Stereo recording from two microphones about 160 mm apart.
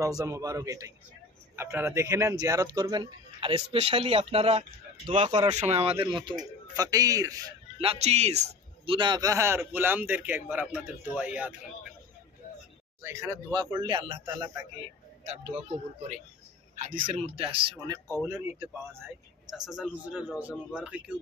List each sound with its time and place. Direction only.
0.0 s a man's voice: 20° right (ahead or behind)
7.8 s speech: 40° right (ahead or behind)
8.8 s a man's voice: 30° right (ahead or behind); by 11.5 s 10° right (ahead or behind)
13.0 s speech: 20° right (ahead or behind)
15.2 s speech: 45° right (ahead or behind)
16.7 s speech: 55° right (ahead or behind)
17.1 s speech: 35° right (ahead or behind)
17.7 s a man's voice: 25° right (ahead or behind)
19.5 s a man's voice: 5° right (ahead or behind)